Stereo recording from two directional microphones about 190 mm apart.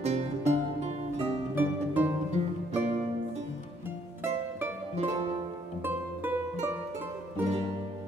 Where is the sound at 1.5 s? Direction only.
10° right (ahead or behind).